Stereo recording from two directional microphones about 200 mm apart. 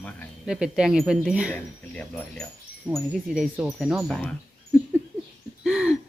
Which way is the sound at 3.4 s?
Centre (ahead or behind).